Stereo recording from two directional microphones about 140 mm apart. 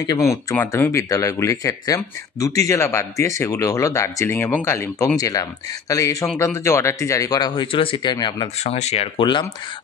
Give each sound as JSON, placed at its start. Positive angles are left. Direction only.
{"t": 0.0, "sound": "speech", "side_deg": 25}
{"t": 8.6, "sound": "speech", "side_deg": 50}